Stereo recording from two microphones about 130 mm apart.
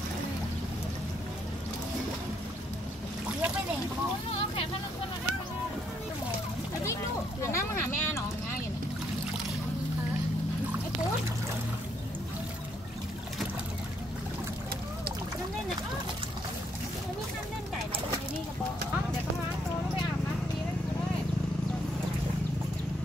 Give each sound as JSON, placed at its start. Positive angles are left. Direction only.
{"t": 4.3, "sound": "vehicle", "side_deg": 45}
{"t": 7.4, "sound": "vehicle", "side_deg": 20}